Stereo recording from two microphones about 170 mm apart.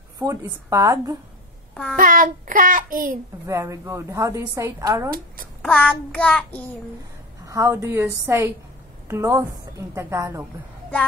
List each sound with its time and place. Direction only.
0.2 s a woman's voice: 15° right (ahead or behind)
2.0 s child singing: 55° right (ahead or behind)
3.4 s a woman's voice: 15° right (ahead or behind)
5.6 s child singing: 5° left (ahead or behind)
7.4 s a woman's voice: 15° right (ahead or behind)